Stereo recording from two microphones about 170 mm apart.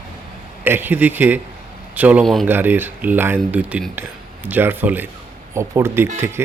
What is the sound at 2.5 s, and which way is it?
Speech, 10° right (ahead or behind).